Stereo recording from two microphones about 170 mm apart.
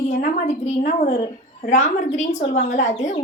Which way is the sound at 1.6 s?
45° left (ahead or behind).